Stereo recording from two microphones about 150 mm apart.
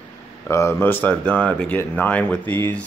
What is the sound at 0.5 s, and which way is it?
Speech, 20° left (ahead or behind).